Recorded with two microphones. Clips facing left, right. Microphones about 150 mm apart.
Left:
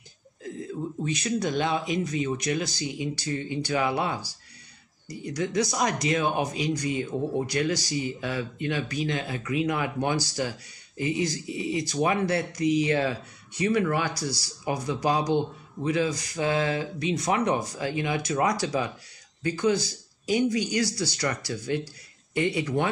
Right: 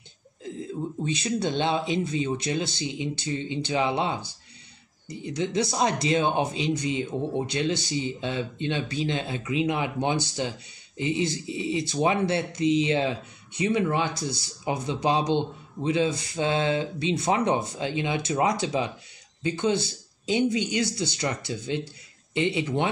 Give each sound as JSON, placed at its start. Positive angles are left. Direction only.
{"t": 0.4, "sound": "speech", "side_deg": -25}